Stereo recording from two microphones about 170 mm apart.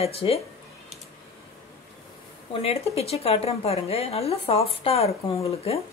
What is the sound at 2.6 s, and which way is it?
A woman's voice, 35° left (ahead or behind).